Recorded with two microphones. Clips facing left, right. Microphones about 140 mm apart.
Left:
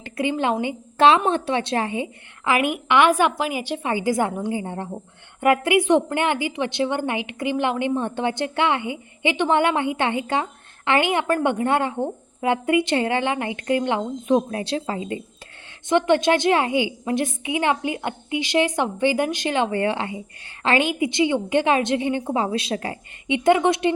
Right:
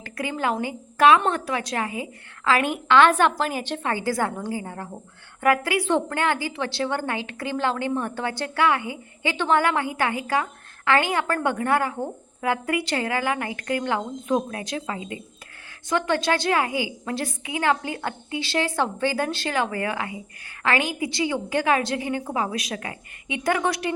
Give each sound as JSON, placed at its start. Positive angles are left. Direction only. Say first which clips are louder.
{"t": 0.0, "sound": "a woman's voice", "louder": "left 4 dB", "side_deg": 25}
{"t": 15.9, "sound": "a woman's voice", "louder": "left 5 dB", "side_deg": 20}